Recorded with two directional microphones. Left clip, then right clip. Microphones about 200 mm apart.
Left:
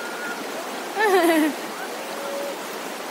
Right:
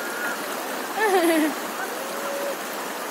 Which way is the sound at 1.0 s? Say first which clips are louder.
Left 2 dB; 45° left (ahead or behind).